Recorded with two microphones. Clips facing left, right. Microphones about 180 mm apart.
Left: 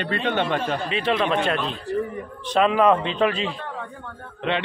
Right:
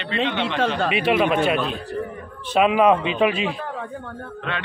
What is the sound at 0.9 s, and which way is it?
A man's voice, 10° right (ahead or behind).